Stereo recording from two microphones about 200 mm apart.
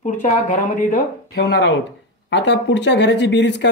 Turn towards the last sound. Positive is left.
turn(degrees=60)  # may be behind; listen again after turning